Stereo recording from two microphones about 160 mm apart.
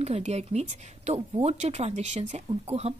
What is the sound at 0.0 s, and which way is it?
A woman's voice, 45° right (ahead or behind).